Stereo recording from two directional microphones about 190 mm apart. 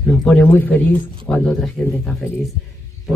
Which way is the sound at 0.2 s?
5° left (ahead or behind).